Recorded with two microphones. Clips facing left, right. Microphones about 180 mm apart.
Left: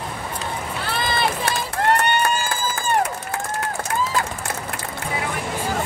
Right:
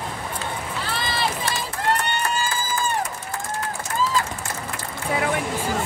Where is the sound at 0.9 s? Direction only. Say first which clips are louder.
Left 4 dB; 55° left (ahead or behind).